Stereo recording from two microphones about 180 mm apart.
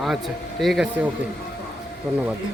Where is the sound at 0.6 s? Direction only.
Centre (ahead or behind).